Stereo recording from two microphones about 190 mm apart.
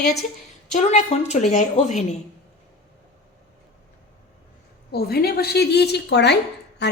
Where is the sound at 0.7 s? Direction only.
40° left (ahead or behind).